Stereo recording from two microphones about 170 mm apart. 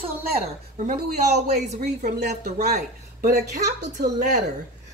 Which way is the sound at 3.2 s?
65° right (ahead or behind).